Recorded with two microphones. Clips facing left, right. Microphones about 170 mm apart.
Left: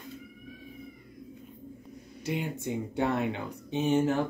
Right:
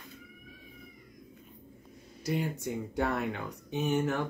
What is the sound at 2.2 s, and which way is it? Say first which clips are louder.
Speech: right 1 dB; 20° left (ahead or behind).